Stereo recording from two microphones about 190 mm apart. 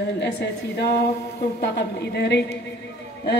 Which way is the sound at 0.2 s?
60° left (ahead or behind).